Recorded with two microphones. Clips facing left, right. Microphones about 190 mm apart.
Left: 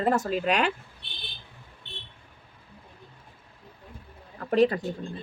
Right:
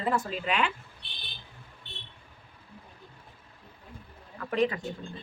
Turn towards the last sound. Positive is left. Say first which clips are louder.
# left 5 dB
turn(degrees=35)  # may be behind; listen again after turning